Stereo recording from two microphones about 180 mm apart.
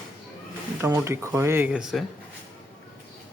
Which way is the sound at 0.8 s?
15° right (ahead or behind).